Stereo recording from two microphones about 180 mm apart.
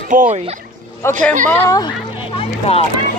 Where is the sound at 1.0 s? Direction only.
15° left (ahead or behind).